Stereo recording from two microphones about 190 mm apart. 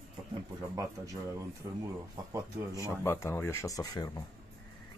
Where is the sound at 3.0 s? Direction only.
15° left (ahead or behind).